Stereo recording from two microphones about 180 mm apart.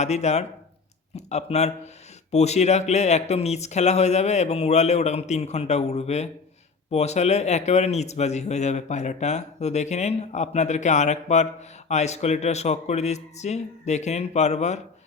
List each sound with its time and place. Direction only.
0.0 s speech: 40° left (ahead or behind)